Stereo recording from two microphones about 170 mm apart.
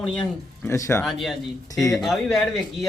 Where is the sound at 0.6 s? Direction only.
15° left (ahead or behind).